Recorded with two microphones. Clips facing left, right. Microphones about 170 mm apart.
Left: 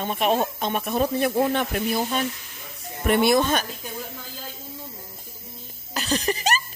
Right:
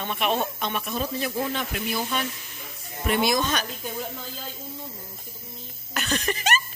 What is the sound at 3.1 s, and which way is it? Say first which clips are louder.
Speech: left 4 dB; 55° left (ahead or behind).